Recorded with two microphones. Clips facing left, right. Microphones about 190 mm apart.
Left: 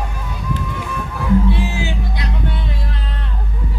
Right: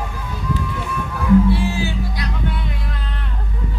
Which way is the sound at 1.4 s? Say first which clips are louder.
Right 1 dB; 20° left (ahead or behind).